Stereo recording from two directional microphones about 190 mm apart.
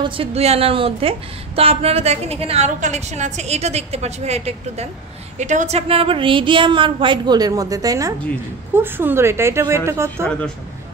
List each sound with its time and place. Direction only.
0.0 s a woman's voice: 30° right (ahead or behind)